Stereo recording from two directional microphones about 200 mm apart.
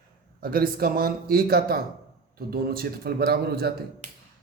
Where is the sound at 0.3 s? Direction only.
50° right (ahead or behind).